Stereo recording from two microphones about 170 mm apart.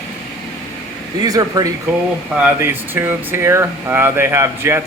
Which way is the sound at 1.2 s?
20° right (ahead or behind).